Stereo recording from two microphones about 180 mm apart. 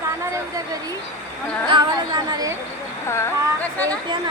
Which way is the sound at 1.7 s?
25° right (ahead or behind).